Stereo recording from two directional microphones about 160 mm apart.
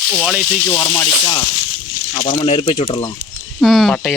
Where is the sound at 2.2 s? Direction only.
30° left (ahead or behind).